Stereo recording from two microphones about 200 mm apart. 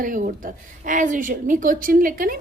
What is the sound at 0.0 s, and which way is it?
A woman's voice, 40° right (ahead or behind).